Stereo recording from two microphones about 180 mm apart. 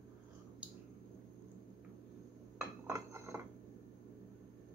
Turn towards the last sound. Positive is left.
turn(degrees=-15)  # may be behind; listen again after turning